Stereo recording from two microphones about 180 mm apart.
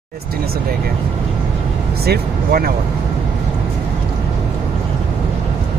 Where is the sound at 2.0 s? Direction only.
55° right (ahead or behind).